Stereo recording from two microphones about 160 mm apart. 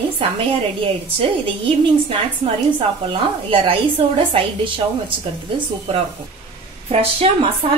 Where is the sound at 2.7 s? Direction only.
35° right (ahead or behind).